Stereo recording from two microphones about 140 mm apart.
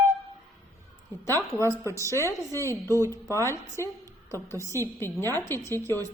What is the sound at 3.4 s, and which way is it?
Speech, 20° left (ahead or behind).